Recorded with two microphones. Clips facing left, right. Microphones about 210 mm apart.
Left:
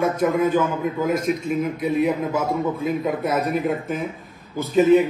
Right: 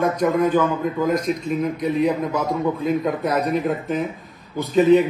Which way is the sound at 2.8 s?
Centre (ahead or behind).